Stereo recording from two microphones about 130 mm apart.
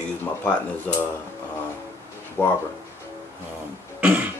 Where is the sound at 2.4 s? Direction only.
15° left (ahead or behind).